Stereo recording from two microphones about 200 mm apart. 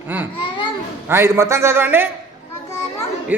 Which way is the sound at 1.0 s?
10° right (ahead or behind).